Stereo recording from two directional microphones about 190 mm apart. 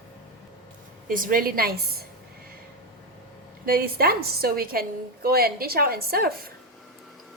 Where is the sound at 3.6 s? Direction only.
50° right (ahead or behind).